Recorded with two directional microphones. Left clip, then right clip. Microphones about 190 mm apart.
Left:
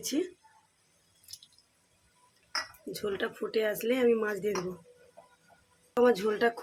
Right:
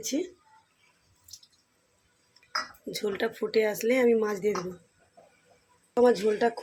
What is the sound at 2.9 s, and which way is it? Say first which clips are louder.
Speech: right 4 dB; 15° right (ahead or behind).